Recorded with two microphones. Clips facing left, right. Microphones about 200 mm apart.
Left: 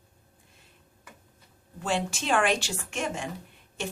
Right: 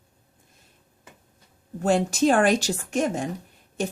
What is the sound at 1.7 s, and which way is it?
Speech, 40° right (ahead or behind).